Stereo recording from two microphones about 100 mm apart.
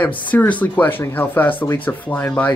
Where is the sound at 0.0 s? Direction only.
15° left (ahead or behind).